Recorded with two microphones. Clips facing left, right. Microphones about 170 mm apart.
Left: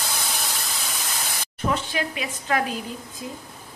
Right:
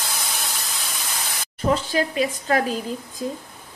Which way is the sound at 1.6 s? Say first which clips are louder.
Right 4 dB; 35° right (ahead or behind).